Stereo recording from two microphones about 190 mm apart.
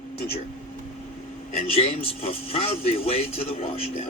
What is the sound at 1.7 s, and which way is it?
A man's voice, 30° left (ahead or behind).